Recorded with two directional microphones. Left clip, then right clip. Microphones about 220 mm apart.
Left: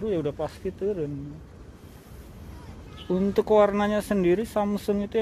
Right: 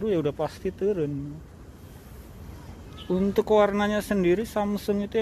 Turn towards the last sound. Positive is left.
turn(degrees=0)  # may be behind; listen again after turning